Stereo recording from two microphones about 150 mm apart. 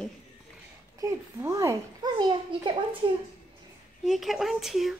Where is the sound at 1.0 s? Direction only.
20° right (ahead or behind).